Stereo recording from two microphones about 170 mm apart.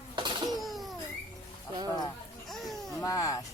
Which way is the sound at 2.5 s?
Centre (ahead or behind).